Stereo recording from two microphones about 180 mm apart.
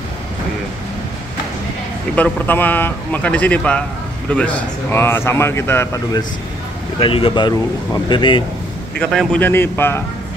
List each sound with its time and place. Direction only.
2.1 s speech: 10° left (ahead or behind)
7.0 s speech: 30° left (ahead or behind)
8.9 s speech: 5° left (ahead or behind)